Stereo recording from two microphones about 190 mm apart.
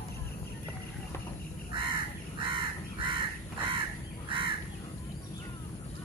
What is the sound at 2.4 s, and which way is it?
Crow, 25° right (ahead or behind).